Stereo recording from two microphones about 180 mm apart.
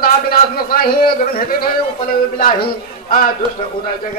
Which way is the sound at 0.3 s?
55° left (ahead or behind).